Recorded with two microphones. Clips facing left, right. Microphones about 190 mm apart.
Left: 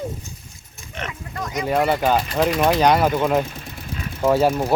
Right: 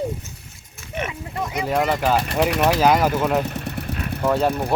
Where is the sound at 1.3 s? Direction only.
25° right (ahead or behind).